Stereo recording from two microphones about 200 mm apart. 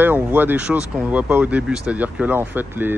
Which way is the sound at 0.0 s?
10° right (ahead or behind).